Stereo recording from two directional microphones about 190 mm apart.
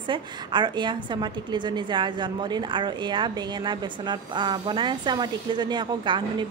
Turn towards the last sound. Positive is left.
turn(degrees=-25)  # may be behind; listen again after turning